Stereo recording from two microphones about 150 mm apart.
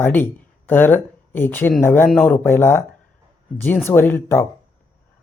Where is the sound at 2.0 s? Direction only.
5° left (ahead or behind).